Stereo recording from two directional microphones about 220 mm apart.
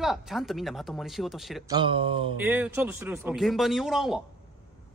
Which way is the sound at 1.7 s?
20° right (ahead or behind).